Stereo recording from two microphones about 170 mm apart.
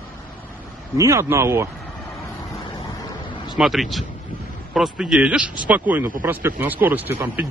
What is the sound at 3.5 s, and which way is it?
A man's voice, centre (ahead or behind).